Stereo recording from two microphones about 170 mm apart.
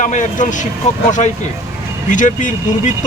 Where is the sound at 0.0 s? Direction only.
45° left (ahead or behind).